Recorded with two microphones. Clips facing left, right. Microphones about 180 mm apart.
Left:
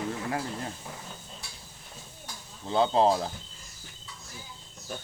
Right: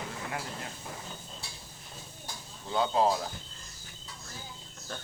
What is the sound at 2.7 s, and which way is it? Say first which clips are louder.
Speech: left 4 dB; 30° left (ahead or behind).